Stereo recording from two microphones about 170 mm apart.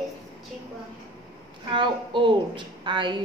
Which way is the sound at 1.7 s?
30° right (ahead or behind).